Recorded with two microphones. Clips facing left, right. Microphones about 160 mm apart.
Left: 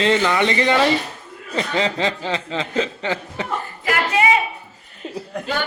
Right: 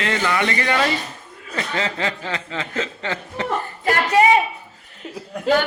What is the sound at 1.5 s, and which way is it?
Chuckle, 20° left (ahead or behind).